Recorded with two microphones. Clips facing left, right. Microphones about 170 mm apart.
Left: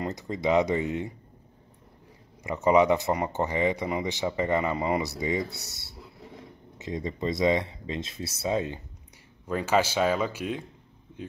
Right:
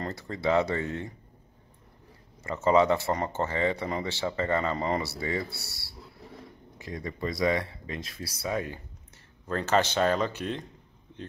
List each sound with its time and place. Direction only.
0.0 s speech: 15° left (ahead or behind)
2.4 s speech: 15° left (ahead or behind)
9.5 s speech: 10° left (ahead or behind)